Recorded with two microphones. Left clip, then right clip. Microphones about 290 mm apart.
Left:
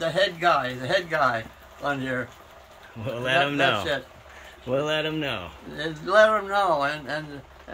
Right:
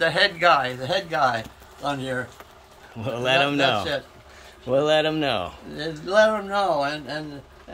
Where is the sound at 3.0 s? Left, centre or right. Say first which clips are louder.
Right 2 dB; centre.